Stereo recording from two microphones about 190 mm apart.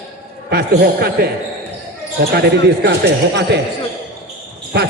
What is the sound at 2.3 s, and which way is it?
Speech, 60° right (ahead or behind).